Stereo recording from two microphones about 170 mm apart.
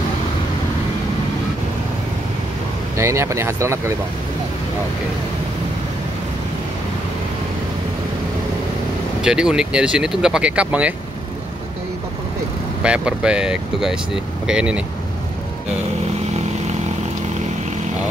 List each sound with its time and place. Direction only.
3.0 s speech: 15° right (ahead or behind)
9.2 s speech: 5° right (ahead or behind)
12.8 s speech: 5° right (ahead or behind)